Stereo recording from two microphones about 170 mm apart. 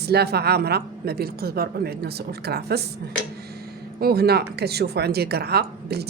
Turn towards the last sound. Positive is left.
turn(degrees=-70)  # may be behind; listen again after turning